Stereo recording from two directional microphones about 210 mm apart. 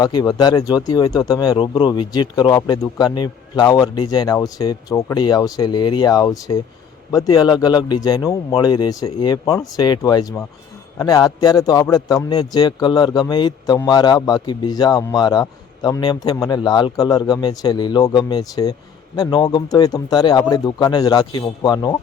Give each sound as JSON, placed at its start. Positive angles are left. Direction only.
{"t": 0.0, "sound": "a man's voice", "side_deg": 20}